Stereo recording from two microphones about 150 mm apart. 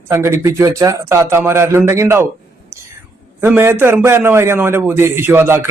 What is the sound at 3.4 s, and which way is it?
A man's voice, 15° right (ahead or behind).